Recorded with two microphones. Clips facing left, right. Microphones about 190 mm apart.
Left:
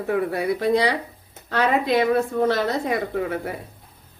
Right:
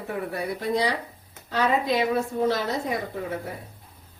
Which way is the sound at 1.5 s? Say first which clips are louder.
Left 3 dB; 65° left (ahead or behind).